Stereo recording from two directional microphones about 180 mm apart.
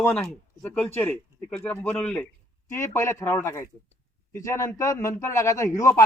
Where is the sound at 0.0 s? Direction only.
5° left (ahead or behind).